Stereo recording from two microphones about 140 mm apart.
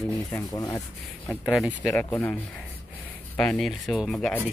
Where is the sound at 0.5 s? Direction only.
25° left (ahead or behind).